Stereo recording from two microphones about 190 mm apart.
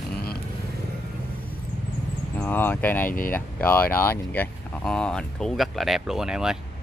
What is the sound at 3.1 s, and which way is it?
Speech, 45° left (ahead or behind).